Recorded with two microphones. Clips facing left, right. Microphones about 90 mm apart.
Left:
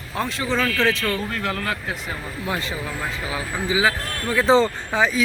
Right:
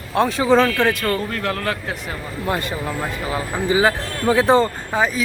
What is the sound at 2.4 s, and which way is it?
Speech, 50° right (ahead or behind).